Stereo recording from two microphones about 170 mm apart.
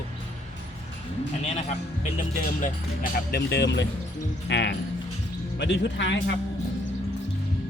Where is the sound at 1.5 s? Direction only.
45° left (ahead or behind).